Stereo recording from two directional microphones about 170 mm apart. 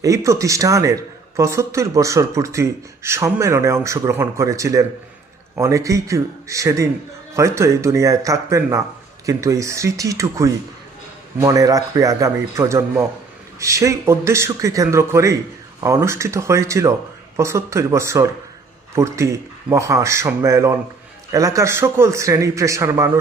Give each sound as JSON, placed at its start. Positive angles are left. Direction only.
{"t": 0.0, "sound": "a man's voice", "side_deg": -20}